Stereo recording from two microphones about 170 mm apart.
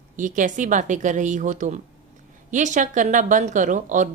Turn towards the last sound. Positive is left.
turn(degrees=-50)  # may be behind; listen again after turning